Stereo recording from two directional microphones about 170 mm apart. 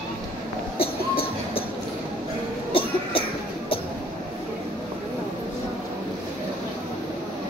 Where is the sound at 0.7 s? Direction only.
35° left (ahead or behind).